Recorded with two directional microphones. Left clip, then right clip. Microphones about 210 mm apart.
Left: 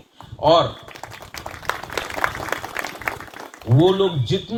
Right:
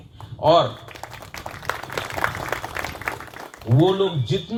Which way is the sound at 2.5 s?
35° left (ahead or behind).